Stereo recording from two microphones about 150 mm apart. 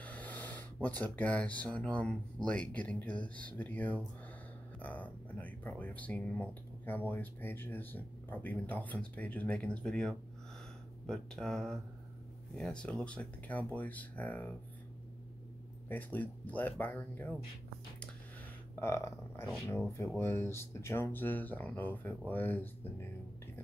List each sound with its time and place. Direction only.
0.0 s speech: 10° left (ahead or behind)
15.9 s speech: 10° left (ahead or behind)
18.8 s speech: 20° left (ahead or behind)